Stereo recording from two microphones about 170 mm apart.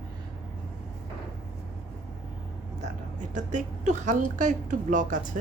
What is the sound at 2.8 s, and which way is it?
A woman's voice, 50° right (ahead or behind).